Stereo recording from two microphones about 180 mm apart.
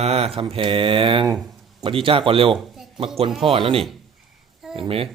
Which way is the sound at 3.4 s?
30° right (ahead or behind).